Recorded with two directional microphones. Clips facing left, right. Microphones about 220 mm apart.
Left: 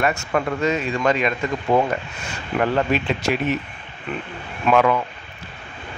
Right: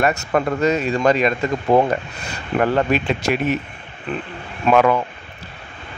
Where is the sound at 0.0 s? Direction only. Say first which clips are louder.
Right 3 dB; 40° right (ahead or behind).